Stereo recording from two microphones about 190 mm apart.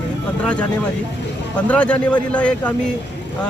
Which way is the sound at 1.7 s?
5° left (ahead or behind).